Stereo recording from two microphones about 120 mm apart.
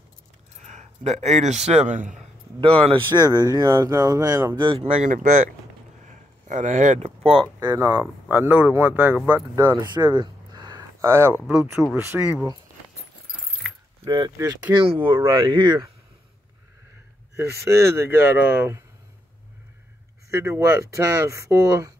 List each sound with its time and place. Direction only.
0.6 s a man's voice: 75° right (ahead or behind)
2.6 s speech: 50° right (ahead or behind)
3.3 s speech: 30° right (ahead or behind)
4.7 s speech: 55° right (ahead or behind)
5.0 s speech: 80° right
6.4 s speech: 90° right
7.6 s speech: 25° right (ahead or behind)
9.7 s a sound: 35° right (ahead or behind)
11.1 s speech: 20° right (ahead or behind)
11.4 s speech: 5° right (ahead or behind)
14.0 s speech: 35° right (ahead or behind)
17.4 s speech: 25° right (ahead or behind)
20.2 s speech: 20° right (ahead or behind)